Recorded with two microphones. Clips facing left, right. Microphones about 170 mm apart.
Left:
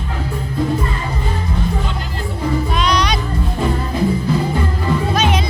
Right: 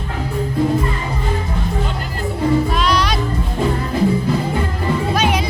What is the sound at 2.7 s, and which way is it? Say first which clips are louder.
Music: even; 5° right (ahead or behind).